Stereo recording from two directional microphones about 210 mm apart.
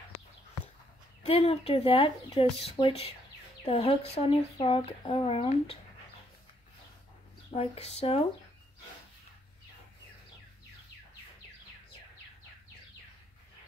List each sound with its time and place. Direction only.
1.2 s speech: 30° left (ahead or behind)
7.5 s speech: 30° left (ahead or behind)